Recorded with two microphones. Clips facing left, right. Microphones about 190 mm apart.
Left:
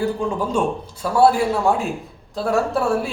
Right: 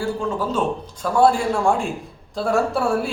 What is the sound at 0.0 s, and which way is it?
A man's voice, 15° left (ahead or behind).